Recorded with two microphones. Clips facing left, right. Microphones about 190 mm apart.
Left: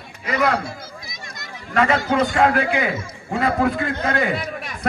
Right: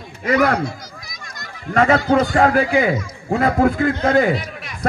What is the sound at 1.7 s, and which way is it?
A man's voice, 45° right (ahead or behind).